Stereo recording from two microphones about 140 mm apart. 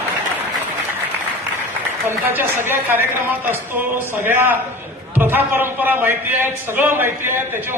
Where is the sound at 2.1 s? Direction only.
15° right (ahead or behind).